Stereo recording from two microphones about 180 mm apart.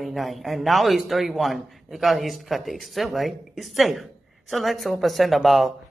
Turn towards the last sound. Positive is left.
turn(degrees=0)  # may be behind; listen again after turning